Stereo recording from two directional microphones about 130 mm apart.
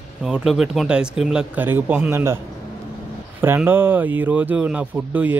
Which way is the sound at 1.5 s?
15° right (ahead or behind).